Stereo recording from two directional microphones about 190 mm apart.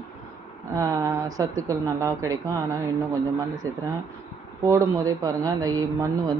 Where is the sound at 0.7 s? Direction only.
15° right (ahead or behind).